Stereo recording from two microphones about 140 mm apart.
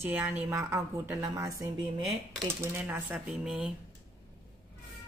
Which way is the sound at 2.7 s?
15° right (ahead or behind).